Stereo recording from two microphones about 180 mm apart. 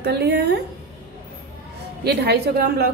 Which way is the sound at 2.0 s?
65° right (ahead or behind).